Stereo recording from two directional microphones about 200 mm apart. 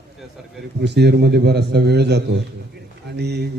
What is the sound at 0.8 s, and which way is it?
A man's voice, 55° right (ahead or behind).